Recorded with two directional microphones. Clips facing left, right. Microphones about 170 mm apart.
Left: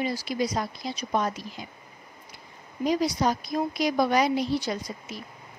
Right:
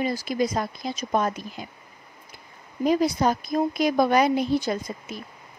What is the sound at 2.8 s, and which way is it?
Speech, 50° right (ahead or behind).